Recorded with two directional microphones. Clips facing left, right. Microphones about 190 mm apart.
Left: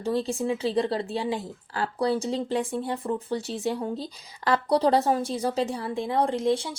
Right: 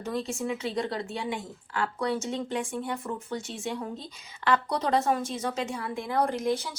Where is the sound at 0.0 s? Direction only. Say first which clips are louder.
Left 5 dB; 30° left (ahead or behind).